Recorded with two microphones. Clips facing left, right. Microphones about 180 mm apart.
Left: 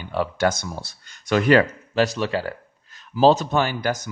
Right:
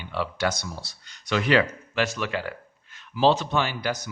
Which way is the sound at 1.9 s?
35° left (ahead or behind).